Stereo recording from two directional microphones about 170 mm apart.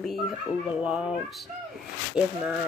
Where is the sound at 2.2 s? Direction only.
5° right (ahead or behind).